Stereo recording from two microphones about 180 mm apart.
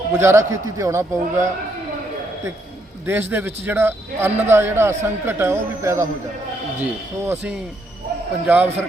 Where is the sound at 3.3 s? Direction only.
10° right (ahead or behind).